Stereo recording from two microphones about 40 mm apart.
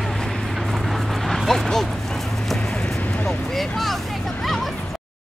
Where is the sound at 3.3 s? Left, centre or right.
Centre.